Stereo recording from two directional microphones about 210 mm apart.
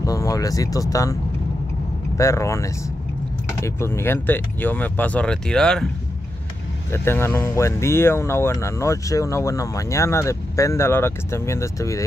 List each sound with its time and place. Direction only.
0.0 s speech: 15° left (ahead or behind)
2.1 s speech: 15° left (ahead or behind)
6.9 s speech: 10° left (ahead or behind)